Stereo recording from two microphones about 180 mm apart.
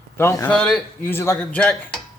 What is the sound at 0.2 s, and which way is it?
Speech, 15° left (ahead or behind).